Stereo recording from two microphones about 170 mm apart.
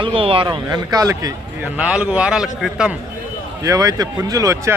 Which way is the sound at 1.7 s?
5° right (ahead or behind).